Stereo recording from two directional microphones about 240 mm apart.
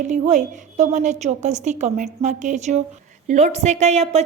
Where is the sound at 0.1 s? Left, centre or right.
Right.